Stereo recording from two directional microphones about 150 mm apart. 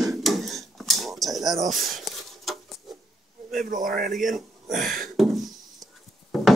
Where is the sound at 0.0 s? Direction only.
Centre (ahead or behind).